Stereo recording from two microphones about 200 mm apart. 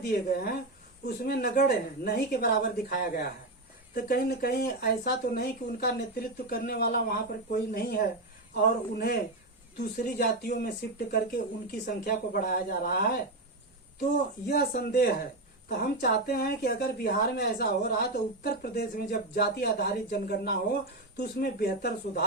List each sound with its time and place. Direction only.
0.1 s a woman's voice: 50° left (ahead or behind)
14.5 s a woman's voice: 50° left (ahead or behind)